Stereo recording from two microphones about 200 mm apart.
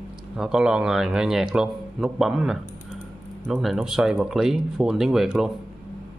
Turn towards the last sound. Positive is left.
turn(degrees=0)  # may be behind; listen again after turning